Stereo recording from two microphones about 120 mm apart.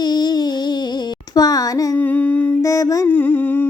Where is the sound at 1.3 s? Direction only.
30° left (ahead or behind).